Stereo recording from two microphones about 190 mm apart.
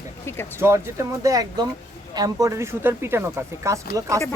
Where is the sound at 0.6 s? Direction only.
15° right (ahead or behind).